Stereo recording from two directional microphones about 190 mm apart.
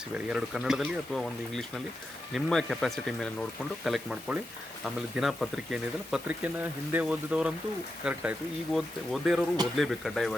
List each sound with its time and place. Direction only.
0.3 s speech: 5° right (ahead or behind)